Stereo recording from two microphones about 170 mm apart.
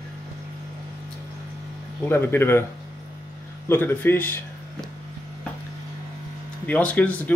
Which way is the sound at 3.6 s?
15° left (ahead or behind).